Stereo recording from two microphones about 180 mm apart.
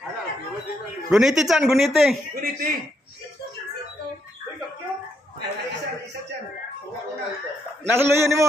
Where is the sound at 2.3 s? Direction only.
50° right (ahead or behind).